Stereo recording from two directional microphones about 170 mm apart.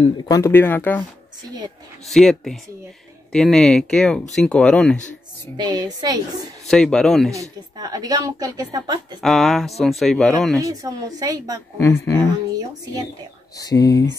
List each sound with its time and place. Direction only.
0.2 s speech: 20° left (ahead or behind)
2.0 s speech: centre (ahead or behind)
5.6 s a woman's voice: 25° right (ahead or behind)
6.7 s speech: 5° left (ahead or behind)
7.3 s a woman's voice: 20° right (ahead or behind)
9.2 s speech: centre (ahead or behind)
10.6 s a woman's voice: 20° right (ahead or behind)
11.8 s speech: 15° left (ahead or behind)
12.5 s a woman's voice: 20° right (ahead or behind)
13.6 s speech: 20° left (ahead or behind)